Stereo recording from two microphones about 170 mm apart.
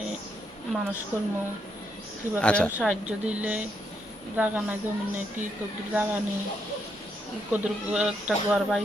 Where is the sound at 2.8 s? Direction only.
5° right (ahead or behind).